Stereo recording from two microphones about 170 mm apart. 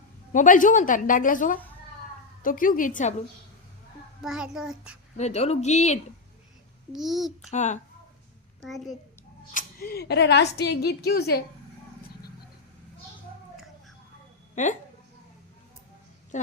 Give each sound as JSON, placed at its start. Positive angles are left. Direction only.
{"t": 0.3, "sound": "a woman's voice", "side_deg": 50}
{"t": 4.2, "sound": "a child's voice", "side_deg": -5}
{"t": 5.1, "sound": "a woman's voice", "side_deg": 40}
{"t": 6.9, "sound": "a child's voice", "side_deg": 0}
{"t": 7.5, "sound": "a woman's voice", "side_deg": 45}
{"t": 8.6, "sound": "a child's voice", "side_deg": 0}
{"t": 9.5, "sound": "a woman's voice", "side_deg": 55}
{"t": 14.5, "sound": "speech", "side_deg": 45}
{"t": 16.3, "sound": "a woman's voice", "side_deg": 45}